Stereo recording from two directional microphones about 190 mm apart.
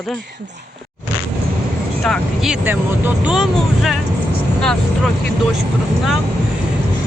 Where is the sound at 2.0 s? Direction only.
Centre (ahead or behind).